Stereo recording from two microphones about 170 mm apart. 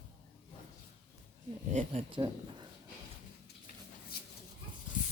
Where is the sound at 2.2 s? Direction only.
35° right (ahead or behind).